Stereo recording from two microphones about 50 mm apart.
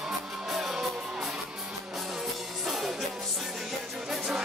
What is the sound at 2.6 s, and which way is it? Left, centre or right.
Music, centre.